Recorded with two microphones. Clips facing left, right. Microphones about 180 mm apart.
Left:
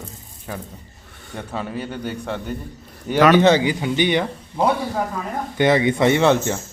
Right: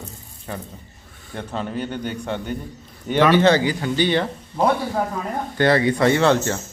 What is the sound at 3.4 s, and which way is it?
Speech, 15° left (ahead or behind).